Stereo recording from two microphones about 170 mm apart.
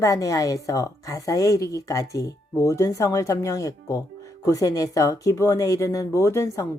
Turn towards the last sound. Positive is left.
turn(degrees=15)  # may be behind; listen again after turning